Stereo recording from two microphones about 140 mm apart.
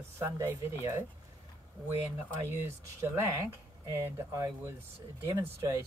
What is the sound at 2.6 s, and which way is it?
Speech, 20° right (ahead or behind).